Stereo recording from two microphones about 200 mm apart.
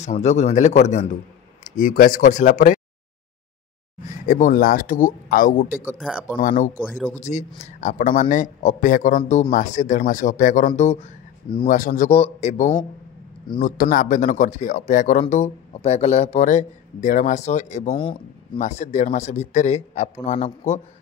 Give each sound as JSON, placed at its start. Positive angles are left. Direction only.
{"t": 0.0, "sound": "speech", "side_deg": 35}
{"t": 4.3, "sound": "speech", "side_deg": 45}
{"t": 5.9, "sound": "speech", "side_deg": -5}
{"t": 6.4, "sound": "speech", "side_deg": 40}
{"t": 6.8, "sound": "speech", "side_deg": -5}
{"t": 7.2, "sound": "speech", "side_deg": 35}
{"t": 11.6, "sound": "speech", "side_deg": 40}
{"t": 18.0, "sound": "speech", "side_deg": 25}